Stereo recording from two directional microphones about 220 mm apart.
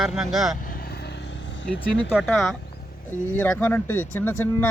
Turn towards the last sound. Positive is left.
turn(degrees=10)  # may be behind; listen again after turning